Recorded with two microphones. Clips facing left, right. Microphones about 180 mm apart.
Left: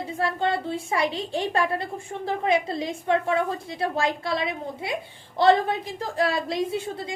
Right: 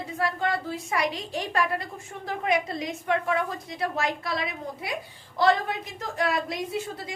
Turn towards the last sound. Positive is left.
turn(degrees=30)  # may be behind; listen again after turning